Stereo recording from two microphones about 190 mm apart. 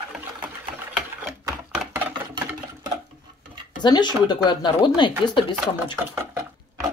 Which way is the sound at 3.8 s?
25° left (ahead or behind).